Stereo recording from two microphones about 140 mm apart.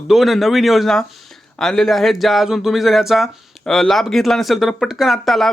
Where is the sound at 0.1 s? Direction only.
Centre (ahead or behind).